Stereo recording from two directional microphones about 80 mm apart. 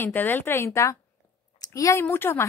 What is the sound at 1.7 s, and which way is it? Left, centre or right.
Speech, left.